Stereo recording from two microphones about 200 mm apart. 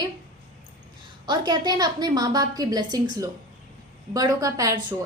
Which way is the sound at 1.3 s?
20° right (ahead or behind).